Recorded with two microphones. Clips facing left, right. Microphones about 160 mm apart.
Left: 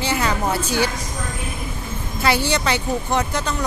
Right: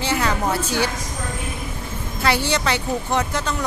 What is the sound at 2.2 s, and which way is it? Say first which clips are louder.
Speech: left 1 dB; 5° left (ahead or behind).